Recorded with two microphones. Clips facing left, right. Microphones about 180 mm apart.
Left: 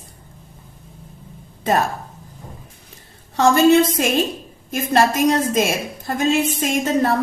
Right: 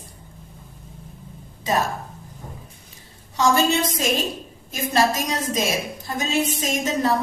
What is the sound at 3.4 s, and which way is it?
A woman's voice, 55° left (ahead or behind).